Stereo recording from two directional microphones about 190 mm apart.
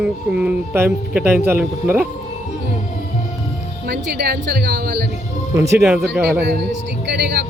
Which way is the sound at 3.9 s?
55° right (ahead or behind).